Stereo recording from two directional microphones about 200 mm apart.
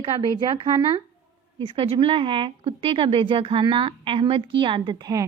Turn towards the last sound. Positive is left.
turn(degrees=-20)  # may be behind; listen again after turning